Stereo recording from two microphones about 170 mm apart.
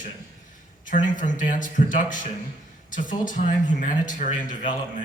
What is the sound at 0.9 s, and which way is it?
Speech, 50° left (ahead or behind).